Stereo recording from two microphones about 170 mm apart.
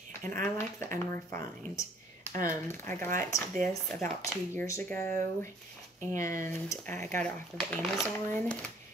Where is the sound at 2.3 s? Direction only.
50° right (ahead or behind).